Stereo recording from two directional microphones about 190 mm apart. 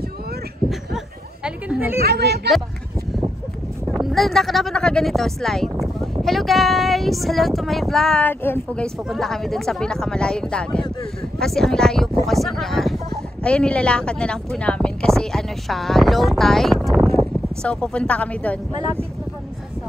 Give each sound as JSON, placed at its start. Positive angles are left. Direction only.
{"t": 0.7, "sound": "a sound", "side_deg": -5}
{"t": 2.0, "sound": "speech", "side_deg": -55}
{"t": 3.9, "sound": "speech", "side_deg": 0}